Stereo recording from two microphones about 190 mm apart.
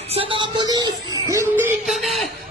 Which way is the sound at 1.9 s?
Centre (ahead or behind).